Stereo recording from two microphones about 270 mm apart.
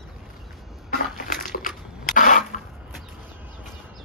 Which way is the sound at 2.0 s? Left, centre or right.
Left.